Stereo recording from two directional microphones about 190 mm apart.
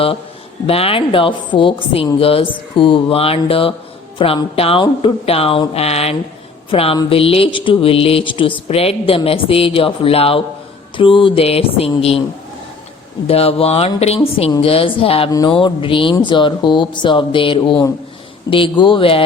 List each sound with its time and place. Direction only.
0.7 s speech: 30° left (ahead or behind)
13.2 s speech: 30° left (ahead or behind)